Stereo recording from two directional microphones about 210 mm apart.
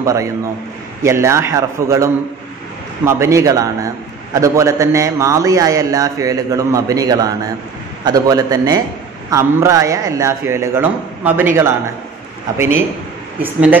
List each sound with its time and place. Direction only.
0.0 s a man's voice: 15° right (ahead or behind)
3.1 s a man's voice: 15° right (ahead or behind)
13.4 s a man's voice: 10° right (ahead or behind)